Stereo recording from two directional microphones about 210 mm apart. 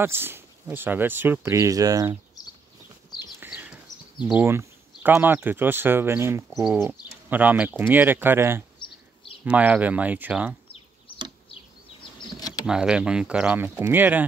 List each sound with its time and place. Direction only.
0.0 s speech: 10° right (ahead or behind)
3.2 s a sound: 10° right (ahead or behind)
6.5 s speech: centre (ahead or behind)
8.7 s bird: 25° left (ahead or behind)
9.4 s speech: 5° right (ahead or behind)
12.0 s a sound: 20° left (ahead or behind)
12.6 s speech: 5° right (ahead or behind)